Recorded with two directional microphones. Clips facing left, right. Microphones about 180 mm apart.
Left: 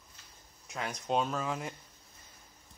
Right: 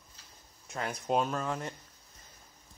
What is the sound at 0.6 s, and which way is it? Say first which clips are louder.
Speech: right 2 dB; centre (ahead or behind).